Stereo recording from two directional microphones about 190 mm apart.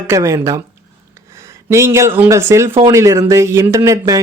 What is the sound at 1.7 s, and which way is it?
Speech, 15° right (ahead or behind).